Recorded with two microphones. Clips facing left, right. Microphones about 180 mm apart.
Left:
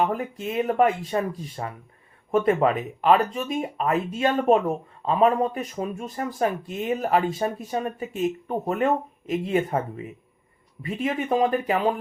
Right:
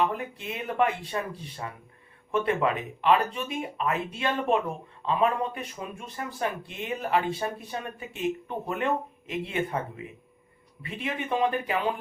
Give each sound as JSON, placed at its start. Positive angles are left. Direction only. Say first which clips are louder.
{"t": 0.0, "sound": "speech", "louder": "left 3 dB", "side_deg": 40}
{"t": 10.8, "sound": "speech", "louder": "left 6 dB", "side_deg": 40}